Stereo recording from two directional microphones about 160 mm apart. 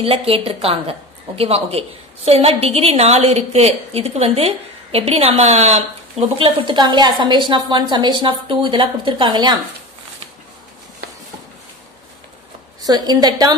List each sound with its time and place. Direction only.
0.0 s a woman's voice: 35° right (ahead or behind)
12.8 s a woman's voice: 25° right (ahead or behind)